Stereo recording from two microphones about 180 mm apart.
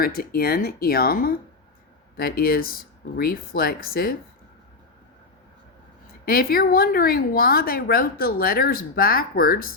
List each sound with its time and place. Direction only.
0.0 s a woman's voice: 55° left (ahead or behind)
6.2 s a woman's voice: 55° left (ahead or behind)